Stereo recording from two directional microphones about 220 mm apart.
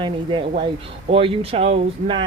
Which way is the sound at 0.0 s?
20° right (ahead or behind).